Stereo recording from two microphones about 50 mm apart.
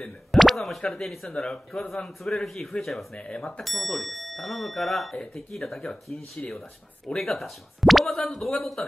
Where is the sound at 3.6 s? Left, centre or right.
Centre.